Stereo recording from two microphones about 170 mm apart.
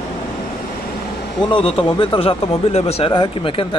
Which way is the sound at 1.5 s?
30° left (ahead or behind).